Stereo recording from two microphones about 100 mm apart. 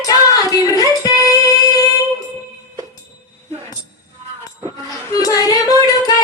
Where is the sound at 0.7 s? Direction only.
35° left (ahead or behind).